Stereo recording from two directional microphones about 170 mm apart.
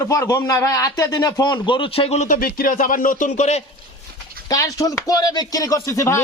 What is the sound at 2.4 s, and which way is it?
Speech, 60° left (ahead or behind).